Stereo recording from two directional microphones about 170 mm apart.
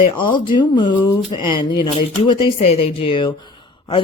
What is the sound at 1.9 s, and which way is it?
Speech, 35° left (ahead or behind).